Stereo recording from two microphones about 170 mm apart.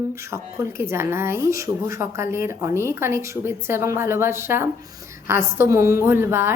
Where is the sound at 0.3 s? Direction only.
15° right (ahead or behind).